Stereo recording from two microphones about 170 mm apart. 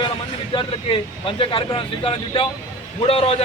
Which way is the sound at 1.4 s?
30° left (ahead or behind).